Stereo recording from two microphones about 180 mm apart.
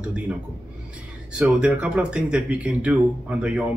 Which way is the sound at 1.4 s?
5° right (ahead or behind).